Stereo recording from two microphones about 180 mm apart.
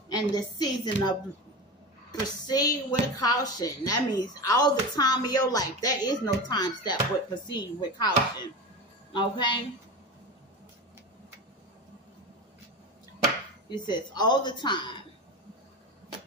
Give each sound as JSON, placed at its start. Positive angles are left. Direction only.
{"t": 0.1, "sound": "speech", "side_deg": 20}
{"t": 2.2, "sound": "speech", "side_deg": 20}
{"t": 13.7, "sound": "speech", "side_deg": 25}